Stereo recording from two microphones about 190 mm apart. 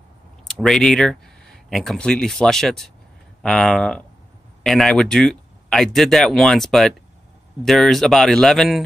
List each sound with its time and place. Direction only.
0.5 s speech: centre (ahead or behind)